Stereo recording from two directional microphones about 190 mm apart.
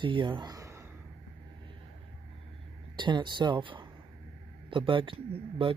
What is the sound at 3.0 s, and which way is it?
Speech, 25° right (ahead or behind).